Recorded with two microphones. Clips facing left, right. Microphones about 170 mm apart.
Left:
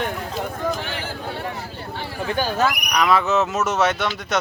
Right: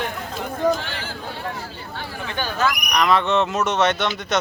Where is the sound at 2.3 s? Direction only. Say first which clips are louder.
Left 3 dB; 40° left (ahead or behind).